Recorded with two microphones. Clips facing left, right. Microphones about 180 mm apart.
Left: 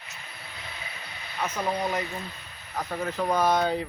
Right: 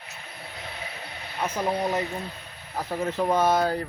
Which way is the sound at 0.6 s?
55° right (ahead or behind).